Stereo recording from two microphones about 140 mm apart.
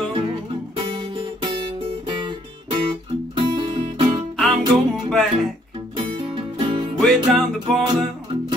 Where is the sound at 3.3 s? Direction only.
40° right (ahead or behind).